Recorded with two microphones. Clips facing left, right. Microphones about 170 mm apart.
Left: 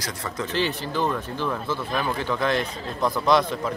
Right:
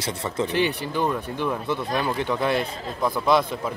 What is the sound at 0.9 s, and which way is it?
A man's voice, 15° right (ahead or behind).